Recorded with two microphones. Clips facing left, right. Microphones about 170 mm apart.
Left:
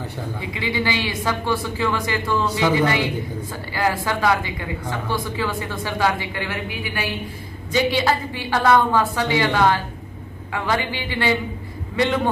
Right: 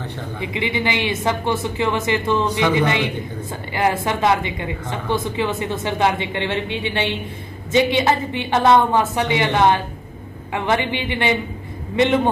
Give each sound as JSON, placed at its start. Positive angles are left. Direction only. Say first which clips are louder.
{"t": 0.4, "sound": "a woman's voice", "louder": "right 3 dB", "side_deg": -20}